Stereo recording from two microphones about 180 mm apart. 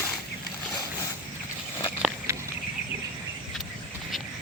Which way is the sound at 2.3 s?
15° right (ahead or behind).